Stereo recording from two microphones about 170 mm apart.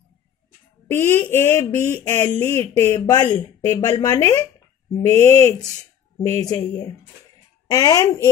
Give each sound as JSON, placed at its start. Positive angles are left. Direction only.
{"t": 0.8, "sound": "speech", "side_deg": 10}